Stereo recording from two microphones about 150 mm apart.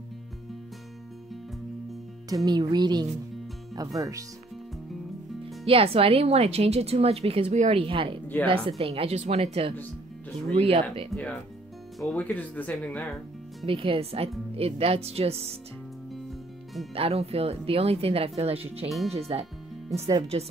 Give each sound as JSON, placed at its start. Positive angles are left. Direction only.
{"t": 2.2, "sound": "speech", "side_deg": -25}
{"t": 5.7, "sound": "a woman's voice", "side_deg": -40}
{"t": 11.1, "sound": "speech", "side_deg": 10}
{"t": 13.7, "sound": "a woman's voice", "side_deg": -40}
{"t": 16.9, "sound": "a woman's voice", "side_deg": -40}